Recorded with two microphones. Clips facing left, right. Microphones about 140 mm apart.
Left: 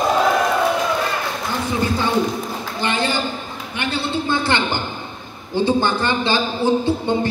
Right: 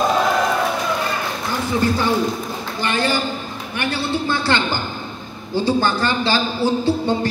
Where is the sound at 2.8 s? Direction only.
20° left (ahead or behind).